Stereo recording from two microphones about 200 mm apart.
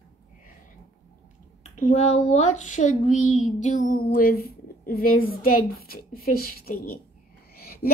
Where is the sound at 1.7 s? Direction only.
35° left (ahead or behind).